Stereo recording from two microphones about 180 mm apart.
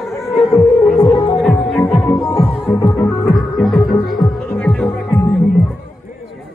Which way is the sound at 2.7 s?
20° left (ahead or behind).